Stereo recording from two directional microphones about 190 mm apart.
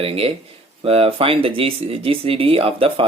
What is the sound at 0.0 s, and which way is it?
Speech, 30° right (ahead or behind).